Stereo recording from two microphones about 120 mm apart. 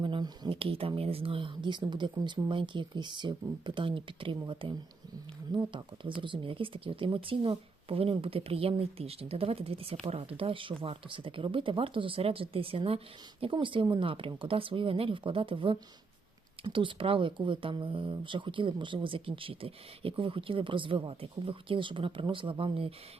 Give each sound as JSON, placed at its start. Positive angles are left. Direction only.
{"t": 0.0, "sound": "speech", "side_deg": -45}